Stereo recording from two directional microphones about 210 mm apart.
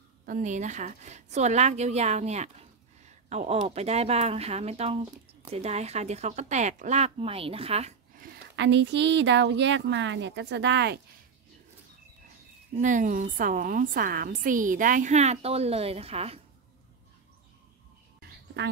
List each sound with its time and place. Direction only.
0.2 s a woman's voice: 40° right (ahead or behind)
8.2 s speech: 55° right (ahead or behind)
12.8 s a woman's voice: 40° right (ahead or behind)
18.6 s speech: 60° right (ahead or behind)